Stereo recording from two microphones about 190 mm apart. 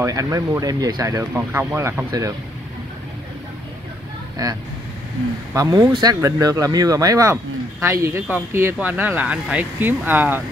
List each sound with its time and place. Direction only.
0.0 s speech: 20° right (ahead or behind)
4.4 s speech: 20° right (ahead or behind)